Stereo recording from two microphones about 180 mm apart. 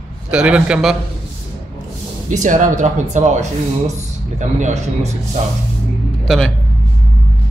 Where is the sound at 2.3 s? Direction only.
45° right (ahead or behind).